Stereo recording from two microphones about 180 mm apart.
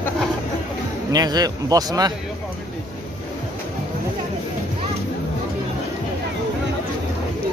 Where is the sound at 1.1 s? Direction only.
20° right (ahead or behind).